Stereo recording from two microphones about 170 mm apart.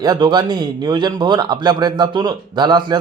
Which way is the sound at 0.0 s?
25° right (ahead or behind).